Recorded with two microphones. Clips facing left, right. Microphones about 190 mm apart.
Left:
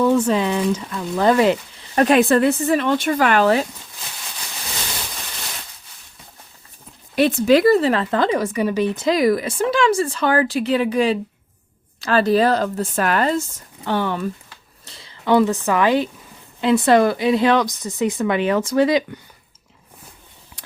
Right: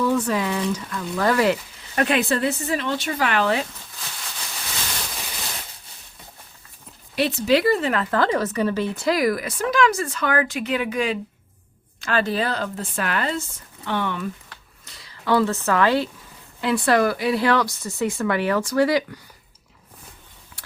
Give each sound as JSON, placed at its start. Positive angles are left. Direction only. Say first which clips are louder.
{"t": 0.0, "sound": "a woman's voice", "louder": "left 5 dB", "side_deg": 25}
{"t": 2.0, "sound": "speech", "louder": "left 7 dB", "side_deg": 45}
{"t": 7.2, "sound": "speech", "louder": "left 5 dB", "side_deg": 50}
{"t": 8.1, "sound": "a woman's voice", "louder": "left 2 dB", "side_deg": 15}
{"t": 14.8, "sound": "a woman's voice", "louder": "left 4 dB", "side_deg": 25}
{"t": 20.6, "sound": "a sound", "louder": "left 3 dB", "side_deg": 20}